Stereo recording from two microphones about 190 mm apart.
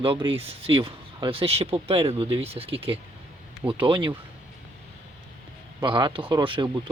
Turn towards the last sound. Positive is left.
turn(degrees=-25)  # may be behind; listen again after turning